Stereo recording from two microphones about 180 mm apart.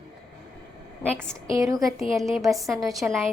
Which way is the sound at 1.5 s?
20° right (ahead or behind).